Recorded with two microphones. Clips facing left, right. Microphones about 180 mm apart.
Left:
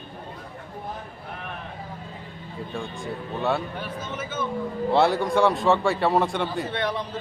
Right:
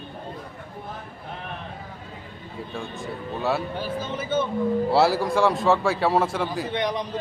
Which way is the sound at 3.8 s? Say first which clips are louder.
Right 3 dB; 30° right (ahead or behind).